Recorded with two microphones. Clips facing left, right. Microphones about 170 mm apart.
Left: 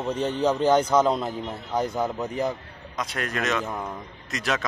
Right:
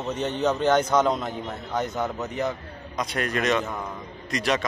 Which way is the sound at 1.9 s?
10° left (ahead or behind).